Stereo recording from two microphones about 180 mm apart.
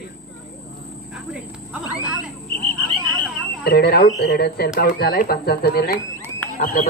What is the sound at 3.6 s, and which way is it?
Speech, 60° left (ahead or behind).